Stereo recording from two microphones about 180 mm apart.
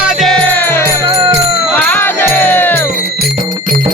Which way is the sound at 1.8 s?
10° left (ahead or behind).